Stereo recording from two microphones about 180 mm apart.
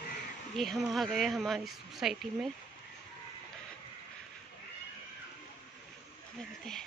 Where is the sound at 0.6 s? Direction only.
Centre (ahead or behind).